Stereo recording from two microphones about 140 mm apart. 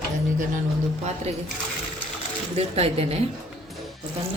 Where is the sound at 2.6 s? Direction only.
45° right (ahead or behind).